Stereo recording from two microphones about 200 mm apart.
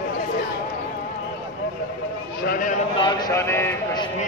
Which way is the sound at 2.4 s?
45° left (ahead or behind).